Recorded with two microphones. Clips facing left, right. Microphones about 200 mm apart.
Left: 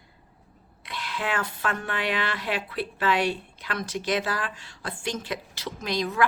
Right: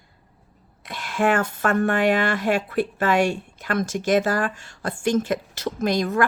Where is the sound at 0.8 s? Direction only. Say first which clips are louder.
Right 9 dB; 45° right (ahead or behind).